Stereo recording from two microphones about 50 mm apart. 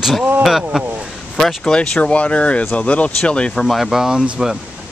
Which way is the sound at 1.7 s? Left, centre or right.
Centre.